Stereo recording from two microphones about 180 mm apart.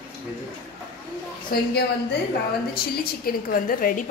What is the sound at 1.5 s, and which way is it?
Speech, 65° left (ahead or behind).